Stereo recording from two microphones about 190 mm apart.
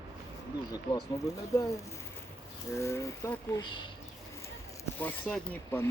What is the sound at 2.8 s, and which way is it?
Speech, 15° left (ahead or behind).